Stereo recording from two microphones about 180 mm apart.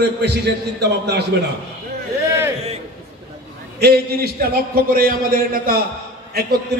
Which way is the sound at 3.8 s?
60° right (ahead or behind).